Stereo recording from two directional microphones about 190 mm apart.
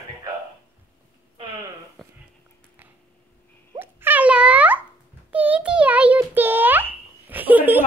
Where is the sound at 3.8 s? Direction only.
10° right (ahead or behind).